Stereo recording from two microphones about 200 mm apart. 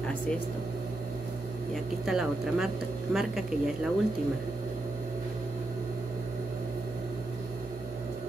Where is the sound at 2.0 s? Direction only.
Centre (ahead or behind).